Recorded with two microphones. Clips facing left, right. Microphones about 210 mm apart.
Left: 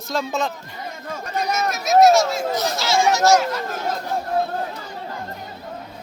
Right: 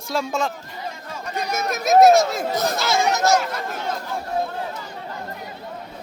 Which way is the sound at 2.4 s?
55° right (ahead or behind).